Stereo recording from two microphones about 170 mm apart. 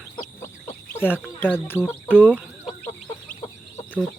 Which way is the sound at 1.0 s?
10° left (ahead or behind).